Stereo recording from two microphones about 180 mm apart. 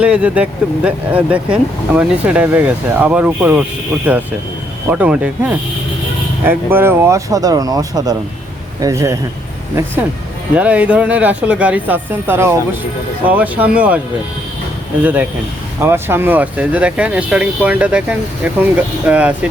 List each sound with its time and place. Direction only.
0.0 s speech: 5° right (ahead or behind)
15.0 s speech: 10° right (ahead or behind)